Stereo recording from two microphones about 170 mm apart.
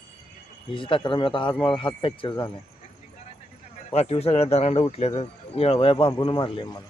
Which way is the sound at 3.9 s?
35° left (ahead or behind).